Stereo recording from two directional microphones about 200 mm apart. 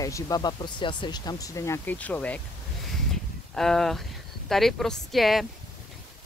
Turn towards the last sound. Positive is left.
turn(degrees=0)  # may be behind; listen again after turning